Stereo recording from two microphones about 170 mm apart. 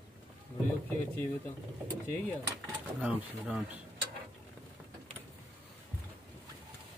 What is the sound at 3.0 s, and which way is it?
Speech, 5° right (ahead or behind).